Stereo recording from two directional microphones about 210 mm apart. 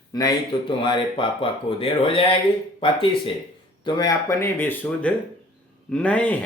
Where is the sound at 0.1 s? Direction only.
20° left (ahead or behind).